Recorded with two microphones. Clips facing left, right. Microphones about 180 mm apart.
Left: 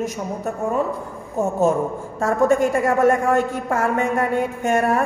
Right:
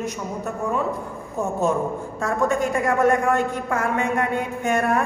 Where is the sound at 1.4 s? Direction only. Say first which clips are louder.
Left 4 dB; 45° left (ahead or behind).